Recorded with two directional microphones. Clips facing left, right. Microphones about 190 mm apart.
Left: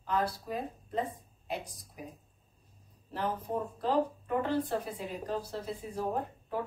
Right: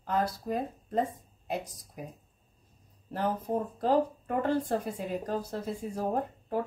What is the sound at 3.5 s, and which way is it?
Speech, 35° right (ahead or behind).